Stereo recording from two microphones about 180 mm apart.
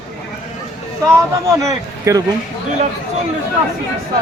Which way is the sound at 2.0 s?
15° right (ahead or behind).